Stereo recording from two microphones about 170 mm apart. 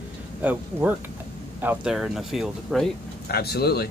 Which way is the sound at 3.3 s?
70° left (ahead or behind).